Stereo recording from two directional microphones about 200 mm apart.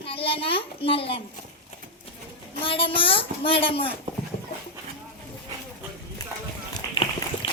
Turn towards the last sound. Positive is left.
turn(degrees=25)  # may be behind; listen again after turning